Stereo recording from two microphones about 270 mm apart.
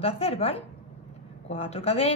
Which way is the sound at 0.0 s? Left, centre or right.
Left.